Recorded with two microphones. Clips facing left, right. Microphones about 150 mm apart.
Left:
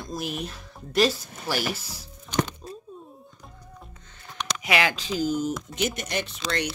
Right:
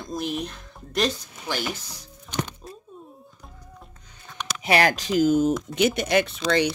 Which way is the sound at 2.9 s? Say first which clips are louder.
Even; centre (ahead or behind).